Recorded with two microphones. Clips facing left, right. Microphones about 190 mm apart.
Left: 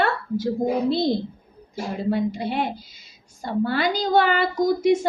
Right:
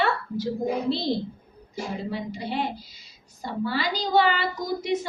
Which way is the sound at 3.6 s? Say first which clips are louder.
Left 5 dB; 55° left (ahead or behind).